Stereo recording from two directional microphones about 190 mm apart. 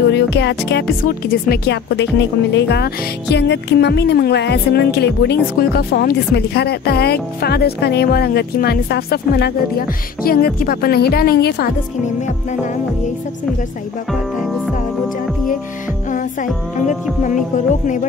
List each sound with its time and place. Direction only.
0.1 s speech: 65° left (ahead or behind)
16.1 s music: 45° left (ahead or behind)
16.4 s speech: centre (ahead or behind)